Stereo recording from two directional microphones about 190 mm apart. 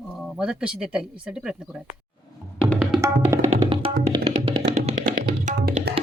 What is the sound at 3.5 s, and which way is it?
Music, 30° right (ahead or behind).